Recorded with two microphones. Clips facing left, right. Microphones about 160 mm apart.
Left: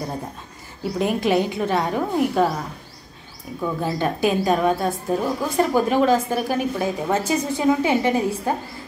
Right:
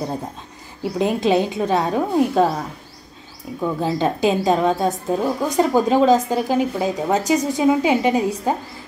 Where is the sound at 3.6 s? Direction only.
20° right (ahead or behind).